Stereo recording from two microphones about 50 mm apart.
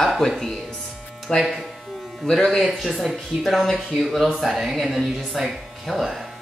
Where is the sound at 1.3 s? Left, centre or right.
Centre.